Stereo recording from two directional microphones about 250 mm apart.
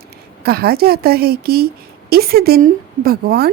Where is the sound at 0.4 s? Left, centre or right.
Right.